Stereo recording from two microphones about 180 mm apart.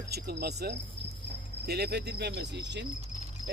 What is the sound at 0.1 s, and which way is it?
Speech, 60° right (ahead or behind).